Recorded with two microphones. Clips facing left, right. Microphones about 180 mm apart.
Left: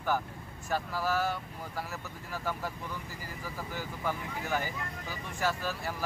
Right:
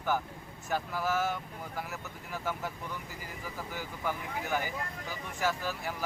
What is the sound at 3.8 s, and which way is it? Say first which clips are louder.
Speech: left 1 dB; 15° right (ahead or behind).